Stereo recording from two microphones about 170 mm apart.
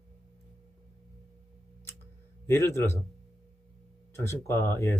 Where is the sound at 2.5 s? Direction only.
15° left (ahead or behind).